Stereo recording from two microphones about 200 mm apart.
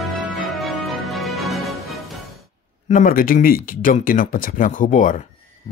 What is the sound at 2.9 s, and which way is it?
Speech, 45° left (ahead or behind).